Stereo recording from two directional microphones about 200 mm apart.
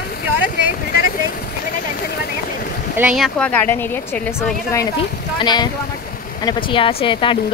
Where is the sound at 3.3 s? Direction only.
10° left (ahead or behind).